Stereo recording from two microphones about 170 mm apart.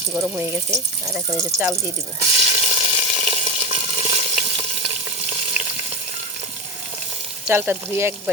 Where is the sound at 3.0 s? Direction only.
30° right (ahead or behind).